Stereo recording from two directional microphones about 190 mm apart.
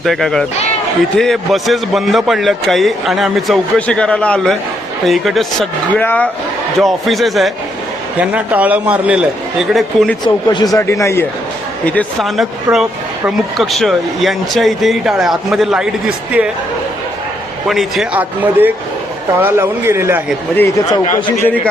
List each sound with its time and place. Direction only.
0.0 s a man's voice: centre (ahead or behind)
10.2 s speech: 20° left (ahead or behind)
11.9 s speech: centre (ahead or behind)
17.7 s a man's voice: centre (ahead or behind)
20.6 s speech: 20° left (ahead or behind)
21.4 s speech: 10° left (ahead or behind)